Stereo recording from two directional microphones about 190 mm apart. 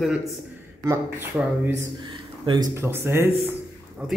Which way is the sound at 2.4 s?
20° right (ahead or behind).